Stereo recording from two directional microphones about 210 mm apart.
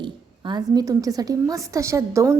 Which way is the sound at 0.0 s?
20° right (ahead or behind).